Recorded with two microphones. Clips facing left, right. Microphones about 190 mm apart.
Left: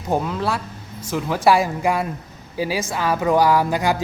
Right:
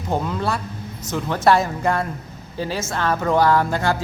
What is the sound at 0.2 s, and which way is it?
A man's voice, centre (ahead or behind).